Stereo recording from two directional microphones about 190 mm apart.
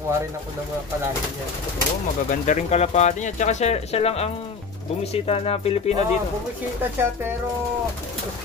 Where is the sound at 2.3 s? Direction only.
40° left (ahead or behind).